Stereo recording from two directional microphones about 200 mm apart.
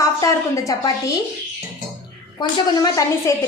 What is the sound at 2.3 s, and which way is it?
Speech, 20° left (ahead or behind).